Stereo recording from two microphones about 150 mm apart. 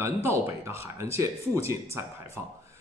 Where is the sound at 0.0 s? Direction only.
20° right (ahead or behind).